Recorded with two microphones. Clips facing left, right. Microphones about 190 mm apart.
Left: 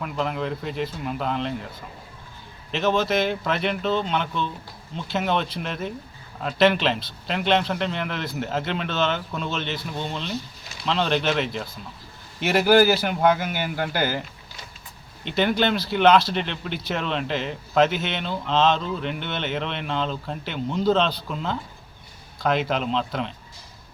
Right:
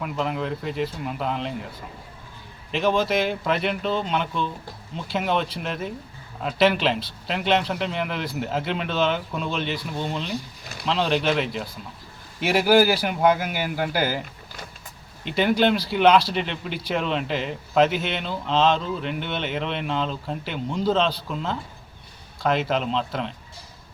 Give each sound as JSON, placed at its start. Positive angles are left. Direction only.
{"t": 0.0, "sound": "speech", "side_deg": 0}
{"t": 2.7, "sound": "speech", "side_deg": -5}